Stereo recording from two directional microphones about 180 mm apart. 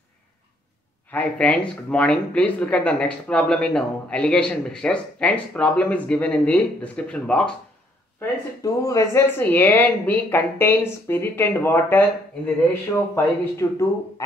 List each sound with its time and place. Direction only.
1.1 s speech: 5° left (ahead or behind)
8.2 s speech: 20° left (ahead or behind)
13.1 s speech: 15° left (ahead or behind)